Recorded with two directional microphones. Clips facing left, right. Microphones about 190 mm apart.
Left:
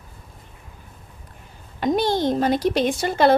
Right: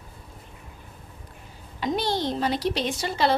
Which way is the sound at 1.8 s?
50° left (ahead or behind).